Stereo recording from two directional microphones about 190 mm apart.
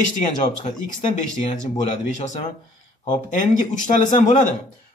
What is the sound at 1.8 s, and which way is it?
Speech, 35° left (ahead or behind).